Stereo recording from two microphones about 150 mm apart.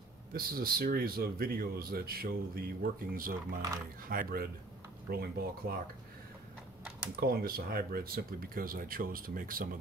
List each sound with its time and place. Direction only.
0.3 s speech: 80° right
7.2 s speech: 85° right; by 9.7 s 70° right (ahead or behind)